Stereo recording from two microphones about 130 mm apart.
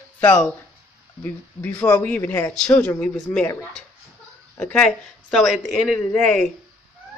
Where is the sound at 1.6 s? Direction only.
10° left (ahead or behind).